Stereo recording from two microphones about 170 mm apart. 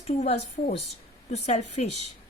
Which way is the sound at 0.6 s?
45° left (ahead or behind).